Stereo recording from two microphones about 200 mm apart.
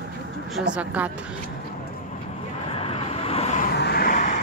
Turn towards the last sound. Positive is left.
turn(degrees=40)  # may be behind; listen again after turning